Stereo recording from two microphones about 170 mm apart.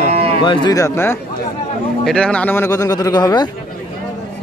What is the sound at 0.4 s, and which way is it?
Speech, 25° left (ahead or behind).